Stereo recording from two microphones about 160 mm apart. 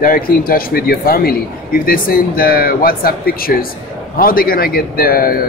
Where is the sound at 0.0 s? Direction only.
60° left (ahead or behind).